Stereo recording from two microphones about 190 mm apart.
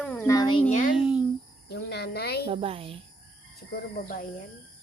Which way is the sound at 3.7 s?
50° left (ahead or behind).